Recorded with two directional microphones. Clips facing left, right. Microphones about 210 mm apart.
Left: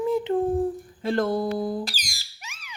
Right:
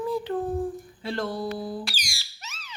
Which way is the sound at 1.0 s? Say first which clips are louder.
Left 6 dB; 50° left (ahead or behind).